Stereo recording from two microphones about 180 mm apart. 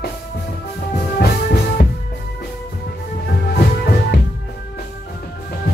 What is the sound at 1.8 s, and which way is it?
Music, 60° left (ahead or behind).